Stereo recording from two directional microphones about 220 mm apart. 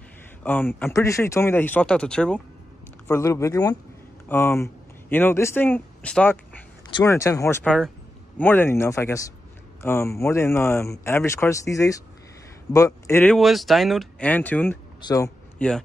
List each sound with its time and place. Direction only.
0.4 s speech: 10° left (ahead or behind)
15.6 s speech: 5° left (ahead or behind)